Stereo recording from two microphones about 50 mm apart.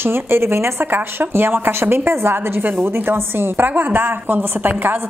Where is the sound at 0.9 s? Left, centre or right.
Right.